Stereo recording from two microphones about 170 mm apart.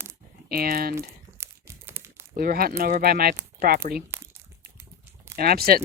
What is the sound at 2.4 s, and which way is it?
Speech, 60° right (ahead or behind).